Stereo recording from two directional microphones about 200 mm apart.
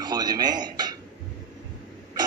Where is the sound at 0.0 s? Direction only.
20° right (ahead or behind).